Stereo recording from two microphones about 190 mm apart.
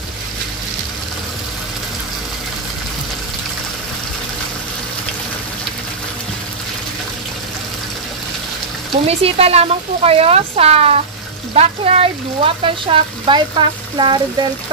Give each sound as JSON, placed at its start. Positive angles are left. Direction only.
{"t": 8.9, "sound": "speech", "side_deg": -30}